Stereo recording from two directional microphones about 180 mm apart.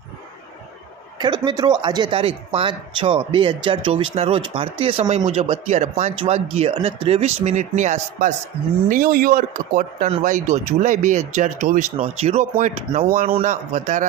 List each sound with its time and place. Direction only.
1.5 s speech: 25° right (ahead or behind); by 14.1 s 45° right (ahead or behind)